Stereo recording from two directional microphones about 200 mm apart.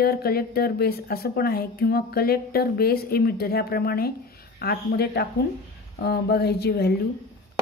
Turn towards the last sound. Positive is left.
turn(degrees=55)  # may be behind; listen again after turning